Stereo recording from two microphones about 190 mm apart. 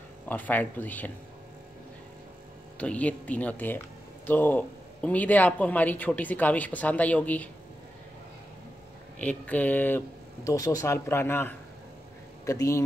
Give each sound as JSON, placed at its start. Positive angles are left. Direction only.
{"t": 0.3, "sound": "speech", "side_deg": 10}
{"t": 2.8, "sound": "speech", "side_deg": 5}
{"t": 9.2, "sound": "speech", "side_deg": 10}